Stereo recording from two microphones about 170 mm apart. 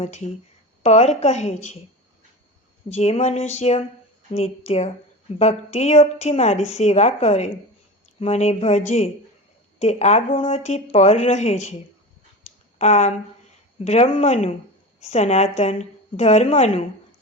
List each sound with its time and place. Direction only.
0.0 s a woman's voice: 40° left (ahead or behind)
2.9 s a woman's voice: 40° left (ahead or behind)
12.4 s a sound: 45° left (ahead or behind)
13.7 s a woman's voice: 40° left (ahead or behind)